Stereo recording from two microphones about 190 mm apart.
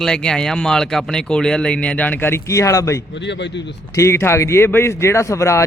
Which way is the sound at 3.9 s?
15° left (ahead or behind).